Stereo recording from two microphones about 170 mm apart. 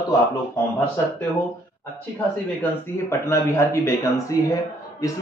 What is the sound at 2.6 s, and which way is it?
A man's voice, 15° left (ahead or behind).